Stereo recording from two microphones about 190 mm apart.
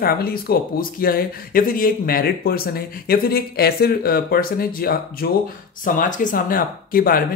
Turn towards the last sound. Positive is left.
turn(degrees=50)  # may be behind; listen again after turning